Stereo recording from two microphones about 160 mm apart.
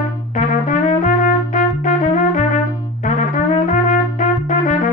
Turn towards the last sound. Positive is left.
turn(degrees=55)  # may be behind; listen again after turning